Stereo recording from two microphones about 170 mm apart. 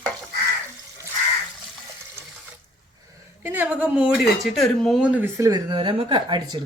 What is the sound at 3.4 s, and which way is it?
Speech, 10° right (ahead or behind).